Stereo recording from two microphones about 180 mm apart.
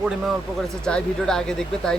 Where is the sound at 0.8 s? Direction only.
5° left (ahead or behind).